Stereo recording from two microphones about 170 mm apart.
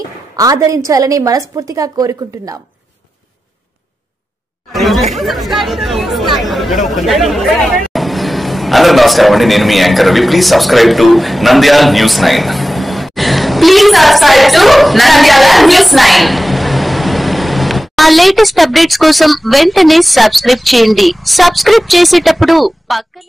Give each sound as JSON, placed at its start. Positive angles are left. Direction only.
{"t": 0.4, "sound": "a woman's voice", "side_deg": -20}
{"t": 4.7, "sound": "chatter", "side_deg": 0}
{"t": 5.1, "sound": "speech", "side_deg": 0}